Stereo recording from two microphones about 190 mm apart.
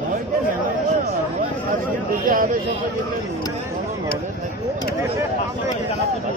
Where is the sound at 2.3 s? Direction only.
45° right (ahead or behind).